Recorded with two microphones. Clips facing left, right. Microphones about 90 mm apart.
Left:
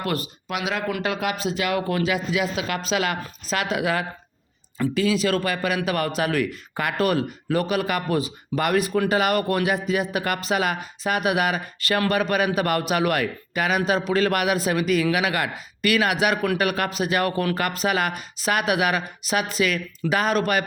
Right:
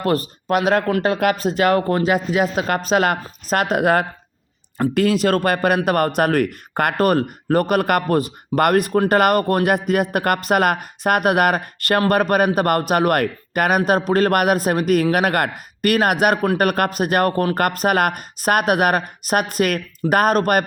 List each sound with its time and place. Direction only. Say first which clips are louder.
0.0 s speech: right 7 dB; 40° right (ahead or behind)
0.4 s speech: right 10 dB; 50° right (ahead or behind)
1.2 s speech: right 8 dB; 50° right (ahead or behind)